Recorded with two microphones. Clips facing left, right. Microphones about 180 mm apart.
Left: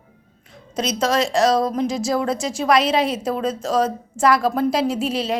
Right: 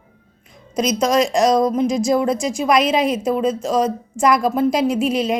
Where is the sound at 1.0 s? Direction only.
15° right (ahead or behind).